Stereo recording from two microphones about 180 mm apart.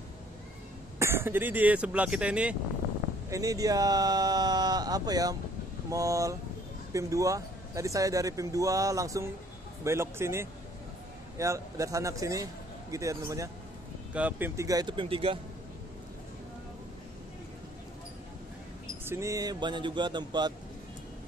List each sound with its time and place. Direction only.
0.9 s speech: 15° right (ahead or behind)
3.3 s speech: 20° right (ahead or behind)
19.0 s speech: 15° right (ahead or behind)